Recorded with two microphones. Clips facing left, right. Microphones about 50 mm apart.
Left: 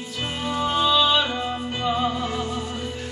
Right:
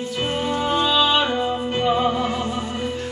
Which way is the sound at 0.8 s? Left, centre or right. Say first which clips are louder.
Left 1 dB; right.